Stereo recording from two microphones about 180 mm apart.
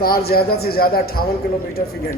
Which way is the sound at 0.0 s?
60° left (ahead or behind).